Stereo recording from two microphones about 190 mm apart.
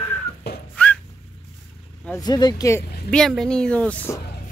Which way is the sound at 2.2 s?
20° left (ahead or behind).